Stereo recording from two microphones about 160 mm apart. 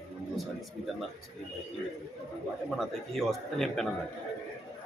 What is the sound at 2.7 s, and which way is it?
A man's voice, centre (ahead or behind).